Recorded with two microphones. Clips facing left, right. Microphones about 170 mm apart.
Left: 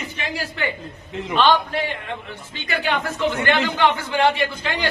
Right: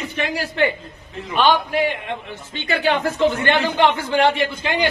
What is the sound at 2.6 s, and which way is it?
Speech, 30° right (ahead or behind).